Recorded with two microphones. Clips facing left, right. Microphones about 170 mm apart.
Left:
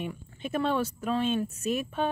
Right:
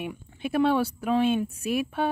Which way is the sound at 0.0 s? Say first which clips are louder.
Right 3 dB; 10° right (ahead or behind).